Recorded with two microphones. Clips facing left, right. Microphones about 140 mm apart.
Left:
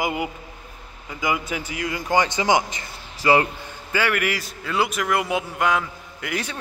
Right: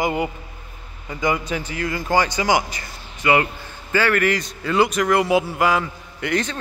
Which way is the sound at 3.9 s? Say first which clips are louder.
Right 4 dB; 10° left (ahead or behind).